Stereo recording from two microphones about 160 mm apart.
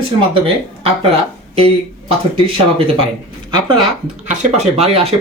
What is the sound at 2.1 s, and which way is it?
Speech, 35° right (ahead or behind).